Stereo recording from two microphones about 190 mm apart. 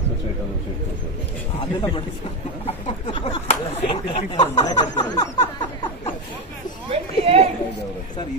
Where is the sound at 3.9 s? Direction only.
25° left (ahead or behind).